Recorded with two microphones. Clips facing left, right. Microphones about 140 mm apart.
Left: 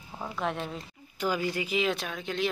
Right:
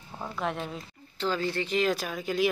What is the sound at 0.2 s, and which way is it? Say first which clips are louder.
Speech: even; centre (ahead or behind).